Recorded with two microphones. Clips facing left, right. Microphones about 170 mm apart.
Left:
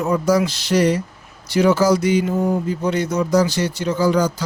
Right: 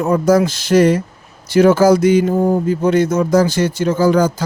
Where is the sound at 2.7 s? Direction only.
50° right (ahead or behind).